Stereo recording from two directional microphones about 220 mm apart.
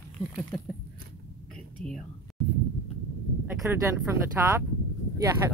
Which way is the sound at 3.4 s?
10° right (ahead or behind).